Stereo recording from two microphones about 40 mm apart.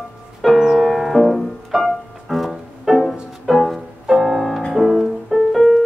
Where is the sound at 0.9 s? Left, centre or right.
Centre.